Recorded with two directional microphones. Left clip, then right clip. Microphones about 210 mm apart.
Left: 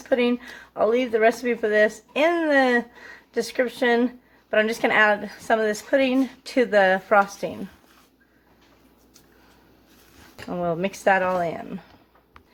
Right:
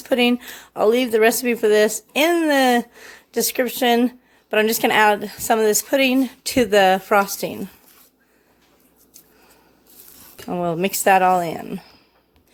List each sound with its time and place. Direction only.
0.1 s speech: 45° right (ahead or behind)
10.5 s speech: 45° right (ahead or behind)